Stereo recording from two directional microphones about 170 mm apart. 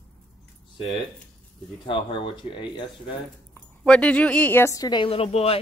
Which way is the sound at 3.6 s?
5° left (ahead or behind).